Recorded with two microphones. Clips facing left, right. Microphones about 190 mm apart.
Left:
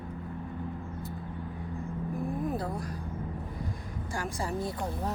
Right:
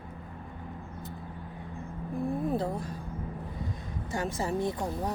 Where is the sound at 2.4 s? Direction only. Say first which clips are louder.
Right 2 dB; 25° right (ahead or behind).